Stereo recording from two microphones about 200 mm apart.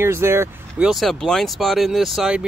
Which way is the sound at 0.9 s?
Centre (ahead or behind).